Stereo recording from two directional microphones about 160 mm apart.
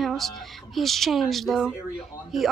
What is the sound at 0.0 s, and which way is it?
A woman's voice, centre (ahead or behind).